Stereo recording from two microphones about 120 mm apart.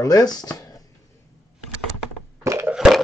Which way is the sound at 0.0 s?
30° left (ahead or behind).